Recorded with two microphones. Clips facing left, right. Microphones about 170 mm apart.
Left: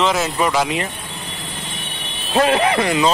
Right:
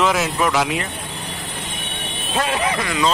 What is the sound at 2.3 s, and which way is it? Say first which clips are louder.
Speech: left 6 dB; 40° left (ahead or behind).